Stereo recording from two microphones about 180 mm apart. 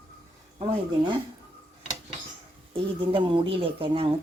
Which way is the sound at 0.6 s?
25° right (ahead or behind).